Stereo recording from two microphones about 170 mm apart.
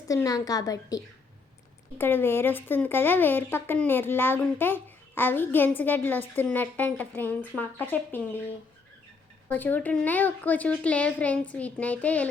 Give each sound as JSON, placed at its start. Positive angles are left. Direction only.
{"t": 0.1, "sound": "a woman's voice", "side_deg": 20}
{"t": 9.5, "sound": "speech", "side_deg": 10}